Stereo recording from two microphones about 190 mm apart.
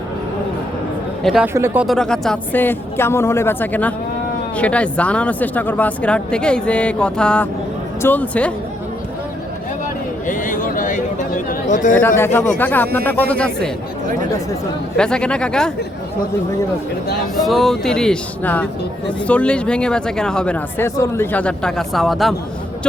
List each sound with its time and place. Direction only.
1.2 s speech: centre (ahead or behind)
1.5 s speech: 10° right (ahead or behind); by 8.5 s 5° left (ahead or behind)
10.2 s a sound: 45° left (ahead or behind)
11.9 s speech: 10° left (ahead or behind)
14.9 s speech: 5° left (ahead or behind)
17.4 s speech: centre (ahead or behind)